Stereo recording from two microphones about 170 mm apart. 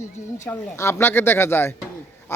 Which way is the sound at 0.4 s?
15° left (ahead or behind).